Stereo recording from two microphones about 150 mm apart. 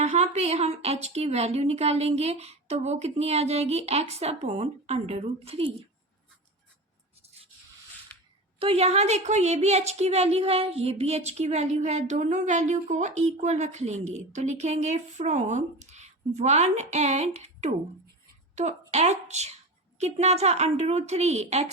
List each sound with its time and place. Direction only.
0.0 s a woman's voice: 50° right (ahead or behind)
8.5 s a woman's voice: 40° right (ahead or behind)